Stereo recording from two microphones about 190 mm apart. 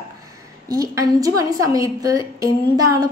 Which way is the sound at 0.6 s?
20° right (ahead or behind).